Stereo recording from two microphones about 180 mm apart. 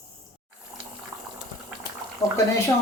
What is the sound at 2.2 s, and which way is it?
Speech, 15° left (ahead or behind).